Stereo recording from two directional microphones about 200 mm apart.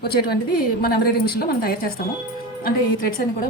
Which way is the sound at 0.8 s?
50° left (ahead or behind).